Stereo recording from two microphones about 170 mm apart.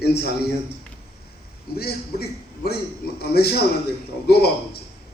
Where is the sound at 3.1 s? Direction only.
70° left (ahead or behind).